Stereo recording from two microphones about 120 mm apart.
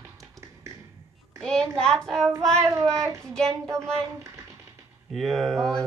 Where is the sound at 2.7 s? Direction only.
25° right (ahead or behind).